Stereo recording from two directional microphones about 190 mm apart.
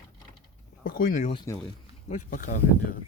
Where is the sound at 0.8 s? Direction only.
50° left (ahead or behind).